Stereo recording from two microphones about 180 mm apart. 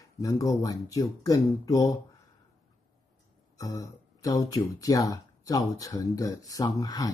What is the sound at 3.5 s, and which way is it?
Speech, 20° left (ahead or behind).